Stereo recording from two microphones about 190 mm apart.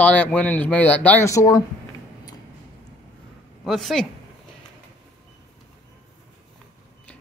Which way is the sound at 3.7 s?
Centre (ahead or behind).